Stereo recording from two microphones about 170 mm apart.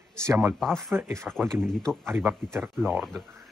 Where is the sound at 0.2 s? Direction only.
15° right (ahead or behind).